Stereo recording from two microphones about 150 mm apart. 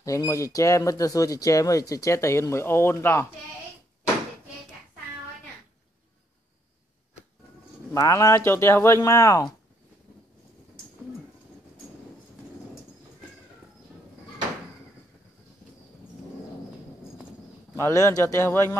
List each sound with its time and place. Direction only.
0.0 s speech: 20° left (ahead or behind)
7.9 s speech: 20° left (ahead or behind)
17.7 s speech: 20° left (ahead or behind)